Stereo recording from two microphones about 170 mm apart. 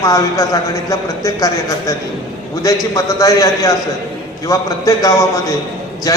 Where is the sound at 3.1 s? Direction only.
20° left (ahead or behind).